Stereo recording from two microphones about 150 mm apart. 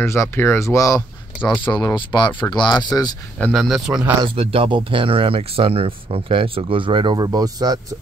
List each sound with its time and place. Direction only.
0.0 s speech: 15° left (ahead or behind)
3.3 s speech: 5° left (ahead or behind)
4.2 s speech: 40° right (ahead or behind)